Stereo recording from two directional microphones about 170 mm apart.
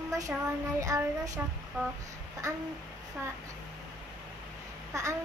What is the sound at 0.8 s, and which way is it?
Child singing, 20° right (ahead or behind).